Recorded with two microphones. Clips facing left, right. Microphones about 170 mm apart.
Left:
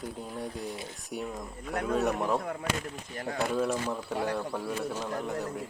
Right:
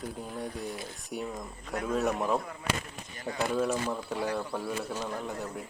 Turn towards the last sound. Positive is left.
turn(degrees=0)  # may be behind; listen again after turning